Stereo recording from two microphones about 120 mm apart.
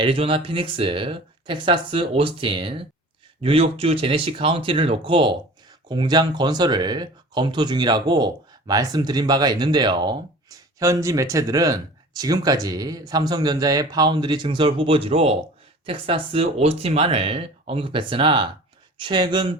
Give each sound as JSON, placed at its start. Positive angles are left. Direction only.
{"t": 0.0, "sound": "speech", "side_deg": -50}